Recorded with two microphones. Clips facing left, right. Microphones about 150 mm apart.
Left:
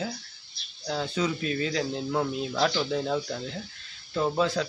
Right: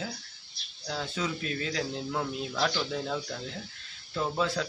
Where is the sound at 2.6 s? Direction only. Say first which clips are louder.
Left 4 dB; 10° left (ahead or behind).